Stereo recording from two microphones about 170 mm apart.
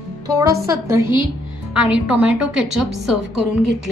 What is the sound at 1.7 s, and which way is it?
A woman's voice, 5° right (ahead or behind).